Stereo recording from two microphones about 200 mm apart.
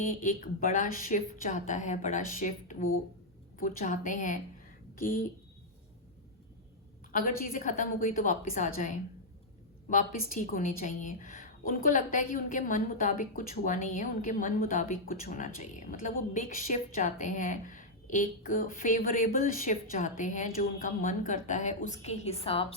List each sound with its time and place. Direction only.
0.0 s a woman's voice: 40° left (ahead or behind)
7.1 s a woman's voice: 45° left (ahead or behind)